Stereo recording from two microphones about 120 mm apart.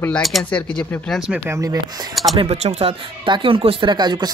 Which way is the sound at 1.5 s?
30° right (ahead or behind).